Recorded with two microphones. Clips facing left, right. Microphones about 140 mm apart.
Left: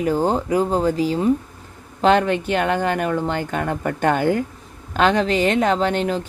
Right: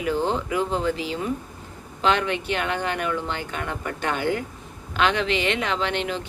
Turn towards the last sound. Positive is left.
turn(degrees=40)  # may be behind; listen again after turning